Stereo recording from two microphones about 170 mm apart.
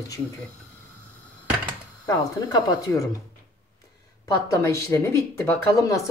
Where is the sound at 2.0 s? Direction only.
20° left (ahead or behind).